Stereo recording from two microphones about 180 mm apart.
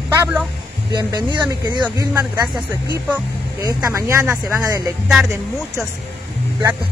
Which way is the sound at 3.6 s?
20° right (ahead or behind).